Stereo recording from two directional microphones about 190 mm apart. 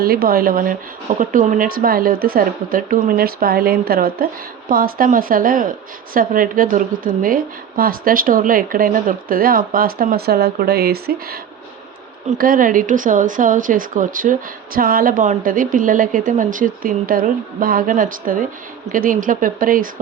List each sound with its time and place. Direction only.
0.0 s speech: 50° right (ahead or behind)
12.4 s speech: 45° right (ahead or behind)